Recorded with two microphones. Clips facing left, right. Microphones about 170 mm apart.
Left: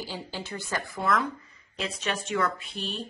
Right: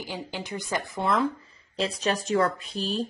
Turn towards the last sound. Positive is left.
turn(degrees=-40)  # may be behind; listen again after turning